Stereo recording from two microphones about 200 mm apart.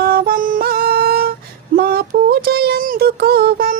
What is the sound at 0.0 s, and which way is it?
Female singing, 50° right (ahead or behind).